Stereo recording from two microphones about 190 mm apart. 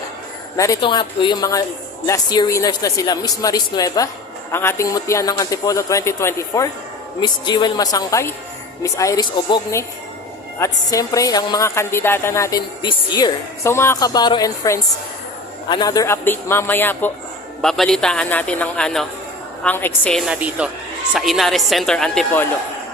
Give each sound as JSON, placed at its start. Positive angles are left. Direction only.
{"t": 0.5, "sound": "a woman's voice", "side_deg": 15}